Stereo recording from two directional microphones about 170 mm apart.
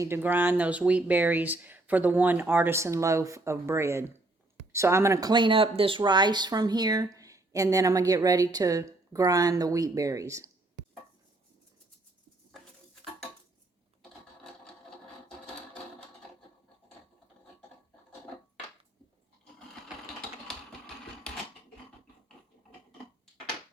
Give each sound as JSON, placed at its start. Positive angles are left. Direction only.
{"t": 0.0, "sound": "speech", "side_deg": -15}
{"t": 20.5, "sound": "typewriter", "side_deg": 5}